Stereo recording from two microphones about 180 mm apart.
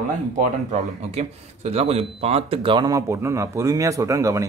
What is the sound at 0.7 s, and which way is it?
Speech, 35° right (ahead or behind).